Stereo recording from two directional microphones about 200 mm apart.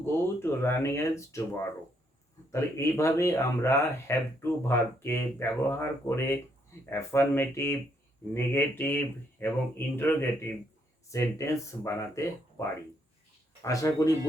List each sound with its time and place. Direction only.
0.0 s speech: 10° left (ahead or behind)
2.5 s speech: 15° left (ahead or behind)
13.7 s speech: 15° left (ahead or behind)